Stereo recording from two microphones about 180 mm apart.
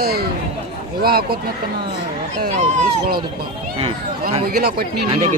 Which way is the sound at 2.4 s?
45° right (ahead or behind).